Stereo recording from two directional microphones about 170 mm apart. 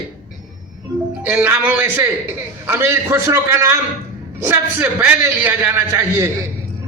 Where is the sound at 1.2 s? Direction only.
10° right (ahead or behind).